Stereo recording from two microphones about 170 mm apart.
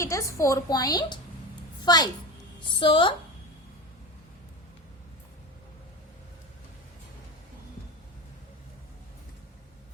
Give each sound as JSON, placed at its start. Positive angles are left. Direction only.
{"t": 0.0, "sound": "a woman's voice", "side_deg": 15}